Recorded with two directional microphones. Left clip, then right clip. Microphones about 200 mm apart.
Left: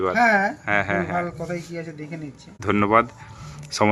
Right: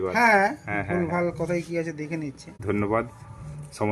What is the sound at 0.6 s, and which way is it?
Speech, 10° left (ahead or behind).